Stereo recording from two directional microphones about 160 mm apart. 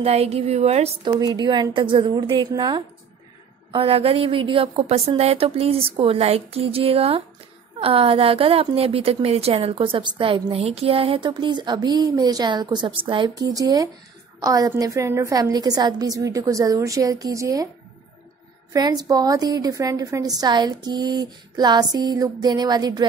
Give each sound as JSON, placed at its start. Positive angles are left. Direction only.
{"t": 0.0, "sound": "speech", "side_deg": -40}
{"t": 1.0, "sound": "a woman's voice", "side_deg": -30}
{"t": 3.7, "sound": "a woman's voice", "side_deg": -40}
{"t": 18.7, "sound": "a woman's voice", "side_deg": -25}